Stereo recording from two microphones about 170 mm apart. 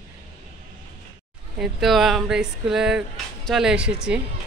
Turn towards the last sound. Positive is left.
turn(degrees=-5)  # may be behind; listen again after turning